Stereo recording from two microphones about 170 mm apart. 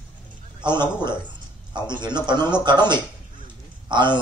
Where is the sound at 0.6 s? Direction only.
25° right (ahead or behind).